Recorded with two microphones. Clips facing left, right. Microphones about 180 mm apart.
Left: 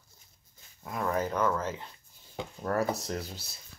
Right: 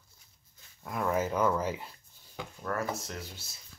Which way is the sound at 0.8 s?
5° right (ahead or behind).